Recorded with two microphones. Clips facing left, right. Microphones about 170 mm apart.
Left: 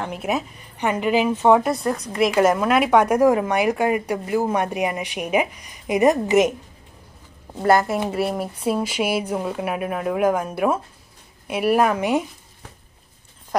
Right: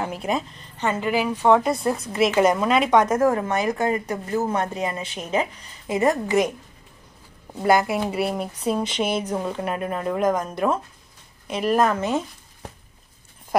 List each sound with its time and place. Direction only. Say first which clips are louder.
0.0 s a woman's voice: left 1 dB; centre (ahead or behind); by 1.6 s 20° left (ahead or behind)
1.6 s a woman's voice: even; centre (ahead or behind); by 6.5 s 20° left (ahead or behind)
7.6 s a woman's voice: left 1 dB; centre (ahead or behind)